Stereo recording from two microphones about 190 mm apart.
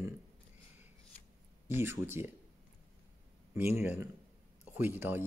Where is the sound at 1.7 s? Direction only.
15° right (ahead or behind).